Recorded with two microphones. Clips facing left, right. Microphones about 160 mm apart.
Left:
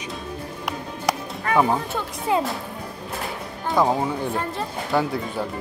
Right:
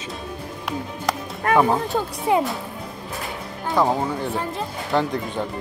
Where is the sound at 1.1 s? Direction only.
15° left (ahead or behind).